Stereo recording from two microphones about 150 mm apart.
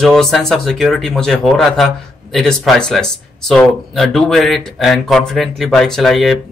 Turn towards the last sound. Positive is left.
turn(degrees=0)  # may be behind; listen again after turning